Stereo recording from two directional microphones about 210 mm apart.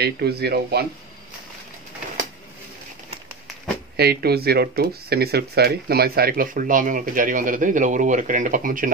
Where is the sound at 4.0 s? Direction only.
50° right (ahead or behind).